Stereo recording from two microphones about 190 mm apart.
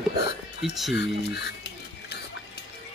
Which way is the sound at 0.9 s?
60° left (ahead or behind).